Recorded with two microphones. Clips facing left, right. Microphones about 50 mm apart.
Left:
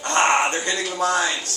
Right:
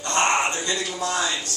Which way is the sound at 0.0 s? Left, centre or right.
Left.